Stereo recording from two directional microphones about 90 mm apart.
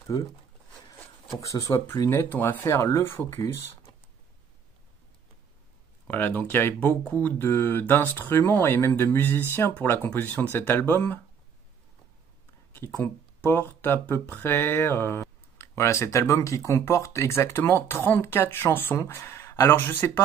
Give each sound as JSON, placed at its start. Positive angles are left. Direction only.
{"t": 0.1, "sound": "speech", "side_deg": 50}
{"t": 1.4, "sound": "speech", "side_deg": 40}
{"t": 2.0, "sound": "speech", "side_deg": 25}
{"t": 2.6, "sound": "speech", "side_deg": 35}
{"t": 6.0, "sound": "speech", "side_deg": 20}
{"t": 12.7, "sound": "speech", "side_deg": 25}
{"t": 19.7, "sound": "speech", "side_deg": 20}